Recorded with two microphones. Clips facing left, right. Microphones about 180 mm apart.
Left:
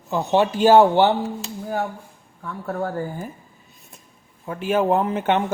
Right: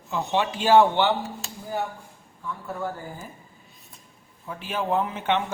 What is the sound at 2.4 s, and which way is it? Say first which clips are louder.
Speech: left 5 dB; 60° left (ahead or behind).